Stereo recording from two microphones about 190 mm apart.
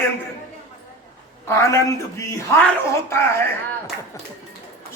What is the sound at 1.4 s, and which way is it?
Speech, 15° left (ahead or behind).